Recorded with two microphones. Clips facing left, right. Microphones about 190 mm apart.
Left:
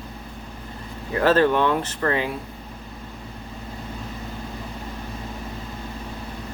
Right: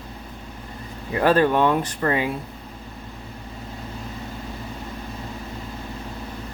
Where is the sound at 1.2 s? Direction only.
15° right (ahead or behind).